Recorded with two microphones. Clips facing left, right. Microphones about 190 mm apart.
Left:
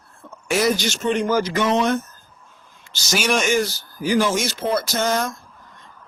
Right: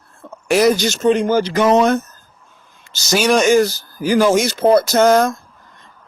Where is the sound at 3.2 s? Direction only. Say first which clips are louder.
Right 7 dB; 40° right (ahead or behind).